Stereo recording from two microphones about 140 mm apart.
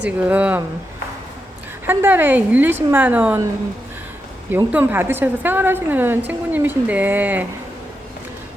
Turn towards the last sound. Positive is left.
turn(degrees=-10)  # may be behind; listen again after turning